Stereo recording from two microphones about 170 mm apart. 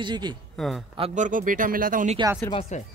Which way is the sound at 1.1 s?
50° right (ahead or behind).